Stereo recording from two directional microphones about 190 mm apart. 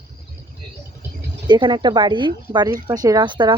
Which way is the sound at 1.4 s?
25° right (ahead or behind).